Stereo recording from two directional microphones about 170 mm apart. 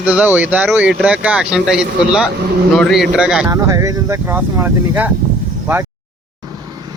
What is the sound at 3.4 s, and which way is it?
Speech, 20° right (ahead or behind).